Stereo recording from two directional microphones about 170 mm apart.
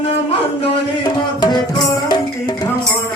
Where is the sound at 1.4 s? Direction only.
25° left (ahead or behind).